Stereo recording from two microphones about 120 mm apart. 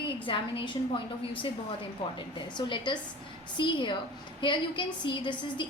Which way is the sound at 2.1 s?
45° left (ahead or behind).